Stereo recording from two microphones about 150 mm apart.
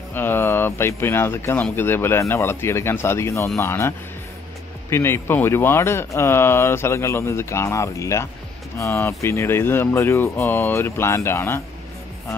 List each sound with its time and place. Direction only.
0.1 s speech: 15° left (ahead or behind)